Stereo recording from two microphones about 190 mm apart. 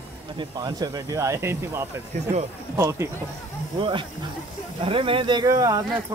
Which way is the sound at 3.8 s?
25° right (ahead or behind).